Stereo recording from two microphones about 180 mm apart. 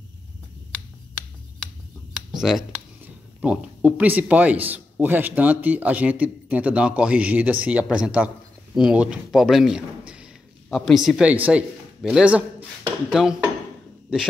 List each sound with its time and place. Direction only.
2.3 s a man's voice: 5° right (ahead or behind)